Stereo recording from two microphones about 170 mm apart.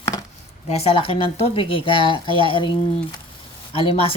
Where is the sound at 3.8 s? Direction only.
35° left (ahead or behind).